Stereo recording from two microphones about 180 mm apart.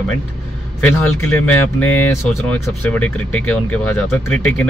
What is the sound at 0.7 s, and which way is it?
Speech, 10° left (ahead or behind).